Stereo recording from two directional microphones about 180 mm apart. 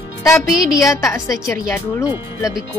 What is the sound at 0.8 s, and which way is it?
Speech, 15° left (ahead or behind).